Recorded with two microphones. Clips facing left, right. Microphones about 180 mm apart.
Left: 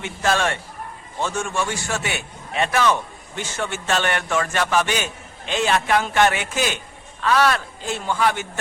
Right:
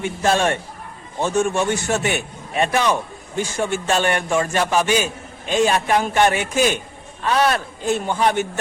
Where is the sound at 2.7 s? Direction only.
15° right (ahead or behind).